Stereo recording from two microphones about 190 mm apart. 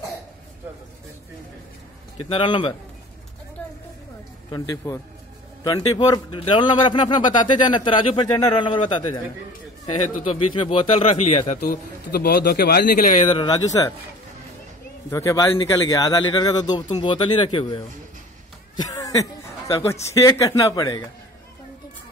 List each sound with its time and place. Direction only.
2.1 s a man's voice: 25° left (ahead or behind)
4.5 s a man's voice: 20° left (ahead or behind)
10.3 s a man's voice: 30° left (ahead or behind); by 13.2 s 45° left (ahead or behind)
13.3 s a man's voice: 20° left (ahead or behind)
15.0 s a man's voice: 15° left (ahead or behind)
18.8 s a sound: 20° left (ahead or behind)
19.7 s a man's voice: 15° left (ahead or behind)